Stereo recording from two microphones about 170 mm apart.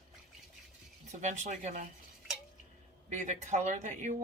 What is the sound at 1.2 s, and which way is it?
Speech, 45° right (ahead or behind).